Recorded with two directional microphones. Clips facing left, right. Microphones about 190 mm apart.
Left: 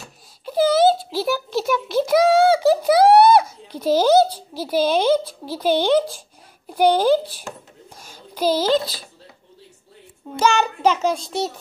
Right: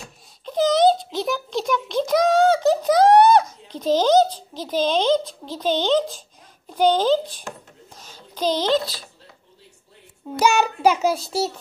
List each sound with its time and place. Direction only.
0.0 s a sound: 5° left (ahead or behind)
6.7 s a child's voice: 10° left (ahead or behind)
10.4 s child singing: 10° right (ahead or behind)